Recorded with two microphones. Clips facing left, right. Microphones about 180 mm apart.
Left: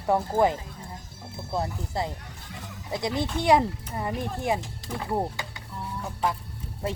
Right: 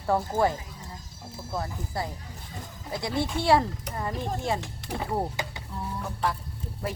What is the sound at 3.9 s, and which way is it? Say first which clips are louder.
Speech: left 1 dB; 75° right (ahead or behind).